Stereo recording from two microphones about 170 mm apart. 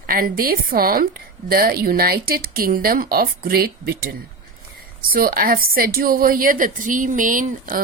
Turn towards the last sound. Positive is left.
turn(degrees=-55)  # may be behind; listen again after turning